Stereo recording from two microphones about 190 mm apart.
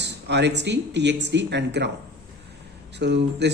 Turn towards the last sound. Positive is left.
turn(degrees=-65)  # may be behind; listen again after turning